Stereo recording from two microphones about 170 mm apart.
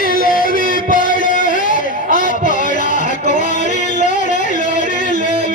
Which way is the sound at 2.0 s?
50° left (ahead or behind).